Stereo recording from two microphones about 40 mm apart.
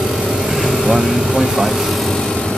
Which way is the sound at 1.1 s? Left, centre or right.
Centre.